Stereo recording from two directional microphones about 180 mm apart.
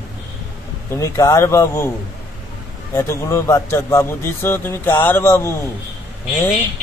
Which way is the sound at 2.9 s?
15° left (ahead or behind).